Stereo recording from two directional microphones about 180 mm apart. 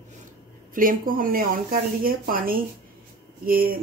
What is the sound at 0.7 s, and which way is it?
Speech, 50° right (ahead or behind).